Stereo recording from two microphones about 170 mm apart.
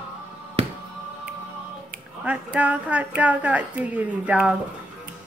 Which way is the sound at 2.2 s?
10° right (ahead or behind).